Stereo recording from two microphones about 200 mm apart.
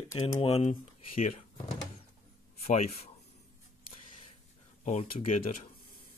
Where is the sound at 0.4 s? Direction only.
30° left (ahead or behind).